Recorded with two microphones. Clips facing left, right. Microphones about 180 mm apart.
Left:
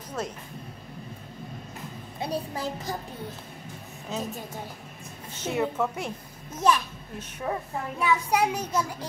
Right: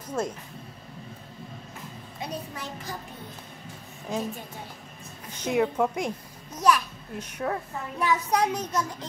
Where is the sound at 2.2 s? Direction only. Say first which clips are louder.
Left 5 dB; 30° left (ahead or behind).